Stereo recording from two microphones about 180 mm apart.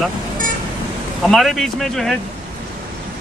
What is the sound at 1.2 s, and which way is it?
Speech, centre (ahead or behind).